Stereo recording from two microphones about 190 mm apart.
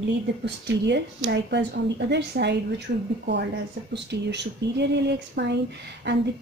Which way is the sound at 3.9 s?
65° right (ahead or behind).